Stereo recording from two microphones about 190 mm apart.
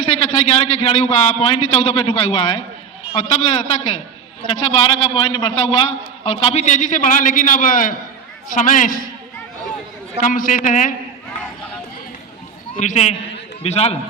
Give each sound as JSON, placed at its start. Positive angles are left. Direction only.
{"t": 0.2, "sound": "a man's voice", "side_deg": 35}
{"t": 10.2, "sound": "a man's voice", "side_deg": 45}
{"t": 12.8, "sound": "a man's voice", "side_deg": 35}